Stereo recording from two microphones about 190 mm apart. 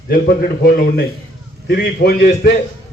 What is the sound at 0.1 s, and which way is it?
A man's voice, 55° left (ahead or behind).